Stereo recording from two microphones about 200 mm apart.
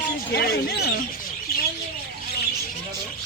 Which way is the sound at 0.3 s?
50° left (ahead or behind).